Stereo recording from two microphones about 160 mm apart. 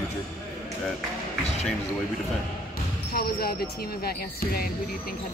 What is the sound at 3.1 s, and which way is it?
Speech, 75° left (ahead or behind).